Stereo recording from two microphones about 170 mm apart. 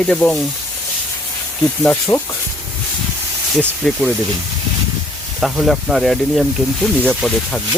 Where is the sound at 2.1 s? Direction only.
20° left (ahead or behind).